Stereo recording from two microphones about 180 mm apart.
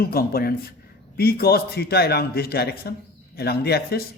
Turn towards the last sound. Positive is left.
turn(degrees=60)  # may be behind; listen again after turning